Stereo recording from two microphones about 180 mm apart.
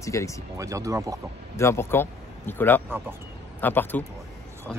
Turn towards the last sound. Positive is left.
turn(degrees=10)  # may be behind; listen again after turning